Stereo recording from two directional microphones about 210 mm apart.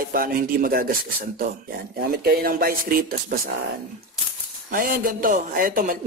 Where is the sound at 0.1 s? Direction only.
45° right (ahead or behind).